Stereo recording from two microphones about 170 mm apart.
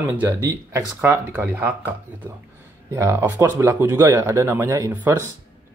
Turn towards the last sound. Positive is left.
turn(degrees=-15)  # may be behind; listen again after turning